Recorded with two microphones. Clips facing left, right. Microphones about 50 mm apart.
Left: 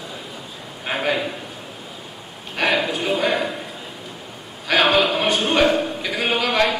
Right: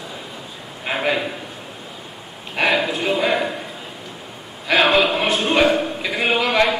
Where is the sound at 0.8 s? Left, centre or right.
Centre.